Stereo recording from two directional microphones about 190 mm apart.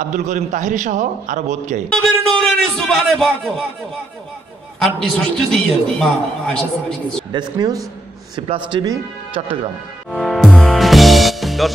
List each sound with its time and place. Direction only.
0.1 s a man's voice: 40° right (ahead or behind)
1.9 s a man's voice: 5° left (ahead or behind)
5.0 s a man's voice: centre (ahead or behind)
7.3 s speech: 20° right (ahead or behind)
10.1 s music: centre (ahead or behind)